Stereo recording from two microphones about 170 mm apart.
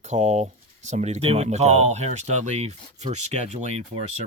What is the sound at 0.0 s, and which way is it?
Speech, 45° right (ahead or behind).